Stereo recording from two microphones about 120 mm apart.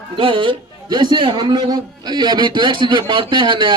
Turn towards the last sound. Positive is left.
turn(degrees=-40)  # may be behind; listen again after turning